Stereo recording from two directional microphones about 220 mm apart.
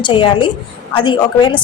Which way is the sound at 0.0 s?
20° left (ahead or behind).